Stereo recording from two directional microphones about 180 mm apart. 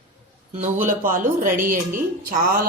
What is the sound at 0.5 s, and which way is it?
A woman's voice, 45° right (ahead or behind).